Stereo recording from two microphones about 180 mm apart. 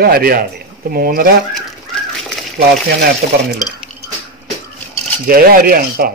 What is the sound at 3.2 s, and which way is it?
Speech, 60° right (ahead or behind).